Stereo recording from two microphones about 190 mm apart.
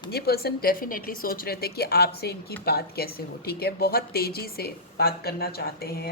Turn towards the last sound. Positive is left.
turn(degrees=55)  # may be behind; listen again after turning